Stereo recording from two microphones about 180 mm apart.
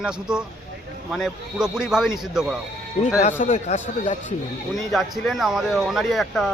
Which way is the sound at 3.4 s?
40° left (ahead or behind).